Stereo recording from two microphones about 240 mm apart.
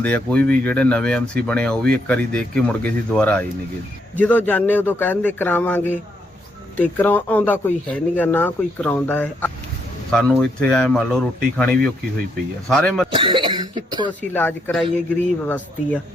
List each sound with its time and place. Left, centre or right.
0.0 s speech: centre
13.1 s speech: right
14.1 s speech: centre